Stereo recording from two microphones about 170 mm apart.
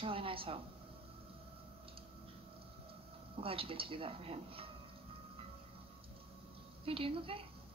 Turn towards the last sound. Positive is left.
turn(degrees=-30)  # may be behind; listen again after turning